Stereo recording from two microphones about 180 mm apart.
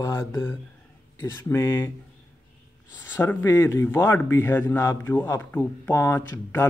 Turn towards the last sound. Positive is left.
turn(degrees=15)  # may be behind; listen again after turning